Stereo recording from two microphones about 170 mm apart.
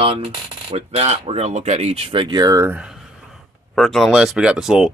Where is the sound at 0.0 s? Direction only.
30° right (ahead or behind).